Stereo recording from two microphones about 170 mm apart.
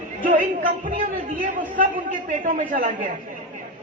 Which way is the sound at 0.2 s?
50° right (ahead or behind).